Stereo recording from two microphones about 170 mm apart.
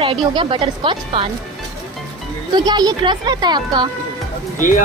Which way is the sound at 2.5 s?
25° right (ahead or behind).